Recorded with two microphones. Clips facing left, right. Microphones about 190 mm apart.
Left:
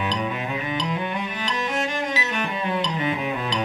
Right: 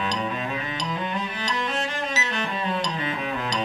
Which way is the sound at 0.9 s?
15° left (ahead or behind).